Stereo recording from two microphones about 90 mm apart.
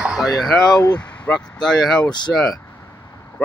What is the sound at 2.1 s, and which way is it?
Speech, 55° left (ahead or behind).